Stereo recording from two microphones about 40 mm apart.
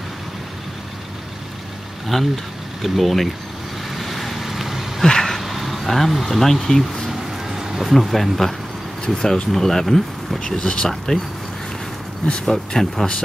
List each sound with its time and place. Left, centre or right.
2.1 s speech: centre
3.9 s vehicle: centre
5.0 s a sound: centre
5.4 s speech: centre
7.1 s a sound: centre
9.0 s speech: centre
9.5 s speech: centre
10.5 s speech: left
12.4 s speech: centre